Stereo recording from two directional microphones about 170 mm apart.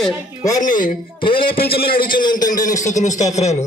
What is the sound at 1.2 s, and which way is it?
Speech, 30° left (ahead or behind).